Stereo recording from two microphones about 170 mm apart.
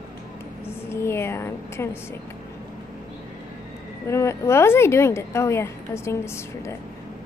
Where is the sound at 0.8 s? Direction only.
15° left (ahead or behind).